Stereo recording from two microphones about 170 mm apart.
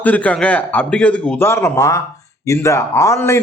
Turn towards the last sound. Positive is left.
turn(degrees=15)  # may be behind; listen again after turning